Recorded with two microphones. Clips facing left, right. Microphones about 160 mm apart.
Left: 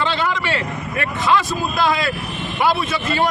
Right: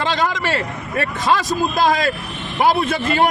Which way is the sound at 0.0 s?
40° right (ahead or behind).